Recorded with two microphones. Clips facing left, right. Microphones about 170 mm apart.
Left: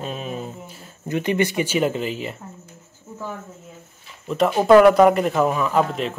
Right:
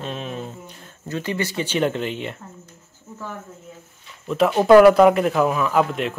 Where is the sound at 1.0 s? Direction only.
20° left (ahead or behind).